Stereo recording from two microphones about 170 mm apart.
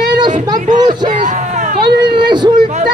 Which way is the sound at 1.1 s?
50° right (ahead or behind).